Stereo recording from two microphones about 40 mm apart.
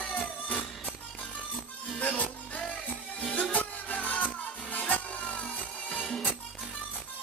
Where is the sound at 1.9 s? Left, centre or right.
Left.